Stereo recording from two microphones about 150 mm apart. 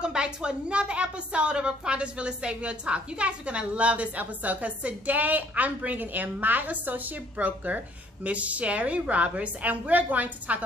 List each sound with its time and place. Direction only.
0.0 s a woman's voice: 5° right (ahead or behind)